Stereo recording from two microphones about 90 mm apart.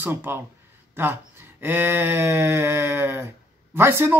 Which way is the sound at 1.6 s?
25° right (ahead or behind).